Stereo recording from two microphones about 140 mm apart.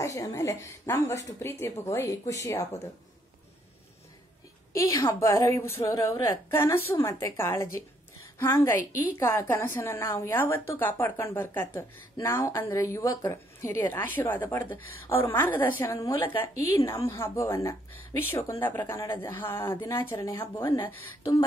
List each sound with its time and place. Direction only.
0.0 s a woman's voice: 20° left (ahead or behind)
4.7 s a woman's voice: 20° left (ahead or behind)